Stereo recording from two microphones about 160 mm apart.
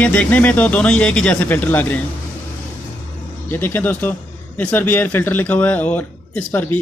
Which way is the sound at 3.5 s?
15° left (ahead or behind).